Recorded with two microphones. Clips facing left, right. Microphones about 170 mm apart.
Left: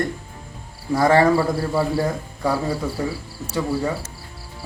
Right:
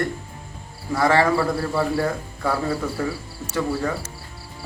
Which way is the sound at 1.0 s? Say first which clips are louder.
Left 3 dB; 40° left (ahead or behind).